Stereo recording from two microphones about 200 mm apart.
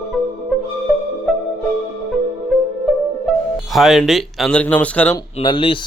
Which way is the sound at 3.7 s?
Centre (ahead or behind).